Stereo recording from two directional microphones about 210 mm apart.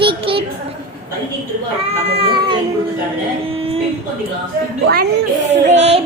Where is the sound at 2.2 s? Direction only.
20° right (ahead or behind).